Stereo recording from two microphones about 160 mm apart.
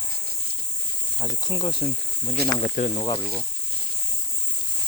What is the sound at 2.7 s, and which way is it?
Speech, 50° left (ahead or behind).